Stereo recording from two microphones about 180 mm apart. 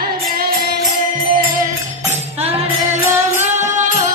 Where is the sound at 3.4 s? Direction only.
40° right (ahead or behind).